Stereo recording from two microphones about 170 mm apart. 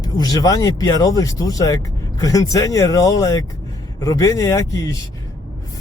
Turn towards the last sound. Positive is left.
turn(degrees=20)  # may be behind; listen again after turning